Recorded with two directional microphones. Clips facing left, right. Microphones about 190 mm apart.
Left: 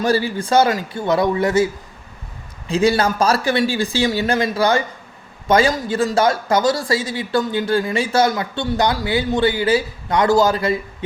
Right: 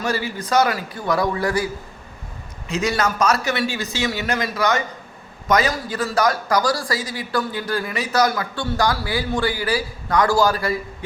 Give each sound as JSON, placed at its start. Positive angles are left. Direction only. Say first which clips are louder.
{"t": 0.0, "sound": "speech", "louder": "left 6 dB", "side_deg": 30}